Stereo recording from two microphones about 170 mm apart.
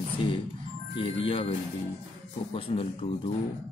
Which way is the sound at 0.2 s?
30° left (ahead or behind).